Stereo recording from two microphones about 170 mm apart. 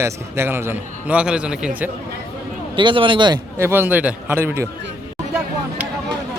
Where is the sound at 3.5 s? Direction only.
15° right (ahead or behind).